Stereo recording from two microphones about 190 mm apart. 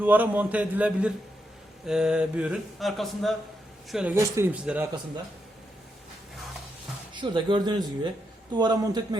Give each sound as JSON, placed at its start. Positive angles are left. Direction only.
{"t": 0.0, "sound": "a man's voice", "side_deg": -10}
{"t": 1.9, "sound": "a sound", "side_deg": -5}
{"t": 3.9, "sound": "a man's voice", "side_deg": -10}
{"t": 7.1, "sound": "speech", "side_deg": -25}